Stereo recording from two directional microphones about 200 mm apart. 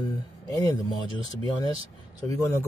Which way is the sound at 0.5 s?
15° left (ahead or behind).